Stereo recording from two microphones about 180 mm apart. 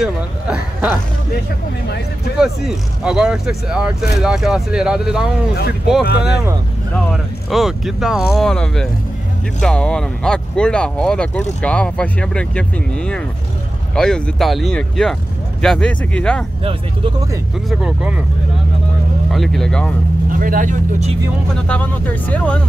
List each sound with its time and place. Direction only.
0.0 s speech: 5° right (ahead or behind)
2.3 s speech: centre (ahead or behind)
17.6 s speech: 5° right (ahead or behind)
19.3 s speech: centre (ahead or behind)
20.2 s speech: 50° right (ahead or behind)
21.5 s speech: 5° left (ahead or behind)